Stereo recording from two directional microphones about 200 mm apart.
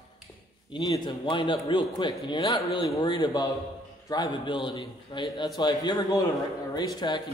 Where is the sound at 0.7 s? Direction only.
25° left (ahead or behind).